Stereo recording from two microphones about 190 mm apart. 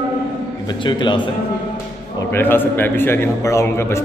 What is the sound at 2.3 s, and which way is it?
A man's voice, 10° left (ahead or behind).